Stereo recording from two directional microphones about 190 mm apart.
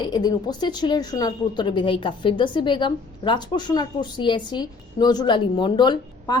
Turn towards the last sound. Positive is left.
turn(degrees=25)  # may be behind; listen again after turning